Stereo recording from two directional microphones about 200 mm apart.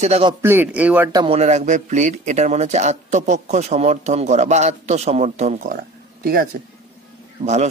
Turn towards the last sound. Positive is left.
turn(degrees=-35)  # may be behind; listen again after turning